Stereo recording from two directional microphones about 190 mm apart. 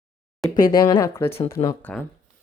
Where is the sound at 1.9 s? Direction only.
5° left (ahead or behind).